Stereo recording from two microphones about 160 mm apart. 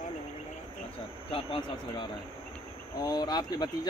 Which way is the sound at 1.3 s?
35° left (ahead or behind).